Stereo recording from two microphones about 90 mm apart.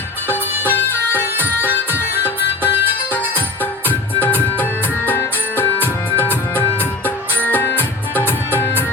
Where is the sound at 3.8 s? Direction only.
20° left (ahead or behind).